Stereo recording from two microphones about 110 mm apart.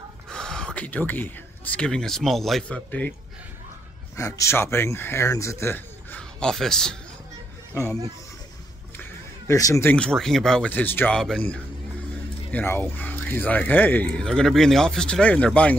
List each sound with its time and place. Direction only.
0.3 s speech: 5° left (ahead or behind)
4.2 s speech: 25° left (ahead or behind)
6.4 s a man's voice: 5° left (ahead or behind)
9.5 s speech: 25° left (ahead or behind)
9.8 s speech: 10° left (ahead or behind)